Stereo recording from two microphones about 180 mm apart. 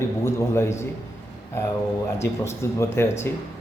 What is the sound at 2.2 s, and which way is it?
A man's voice, 15° left (ahead or behind).